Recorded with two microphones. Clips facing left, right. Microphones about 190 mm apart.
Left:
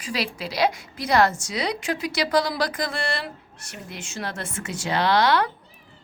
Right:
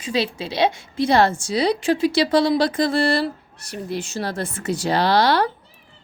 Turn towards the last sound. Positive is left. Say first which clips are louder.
# right 3 dB
turn(degrees=-35)  # may be behind; listen again after turning